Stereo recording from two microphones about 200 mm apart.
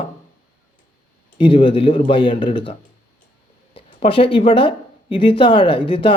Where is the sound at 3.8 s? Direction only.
25° left (ahead or behind).